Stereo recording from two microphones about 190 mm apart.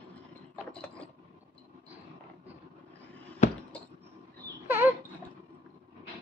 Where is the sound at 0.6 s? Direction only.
5° left (ahead or behind).